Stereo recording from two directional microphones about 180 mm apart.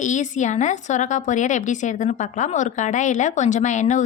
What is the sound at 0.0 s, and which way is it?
A woman's voice, 45° left (ahead or behind).